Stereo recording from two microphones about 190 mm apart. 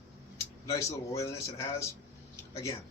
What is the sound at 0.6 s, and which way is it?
Speech, 15° left (ahead or behind).